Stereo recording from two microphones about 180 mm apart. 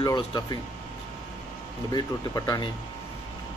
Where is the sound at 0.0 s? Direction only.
25° left (ahead or behind).